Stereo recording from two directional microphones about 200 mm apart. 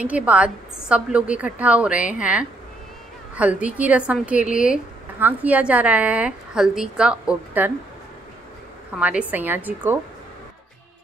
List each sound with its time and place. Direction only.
0.0 s a woman's voice: 5° right (ahead or behind)
8.9 s a woman's voice: 5° right (ahead or behind)